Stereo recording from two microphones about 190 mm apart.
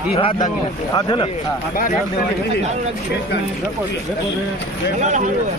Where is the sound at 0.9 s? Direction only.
25° left (ahead or behind).